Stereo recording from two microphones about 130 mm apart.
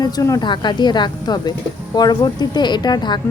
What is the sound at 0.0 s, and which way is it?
Speech, 25° left (ahead or behind).